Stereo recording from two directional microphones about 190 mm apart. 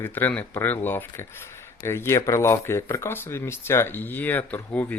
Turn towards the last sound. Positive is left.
turn(degrees=10)  # may be behind; listen again after turning